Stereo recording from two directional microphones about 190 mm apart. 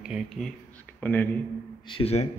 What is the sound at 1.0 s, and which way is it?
Speech, 10° left (ahead or behind).